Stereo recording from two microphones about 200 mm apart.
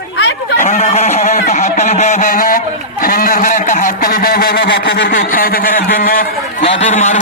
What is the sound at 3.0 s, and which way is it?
A man's voice, 45° left (ahead or behind).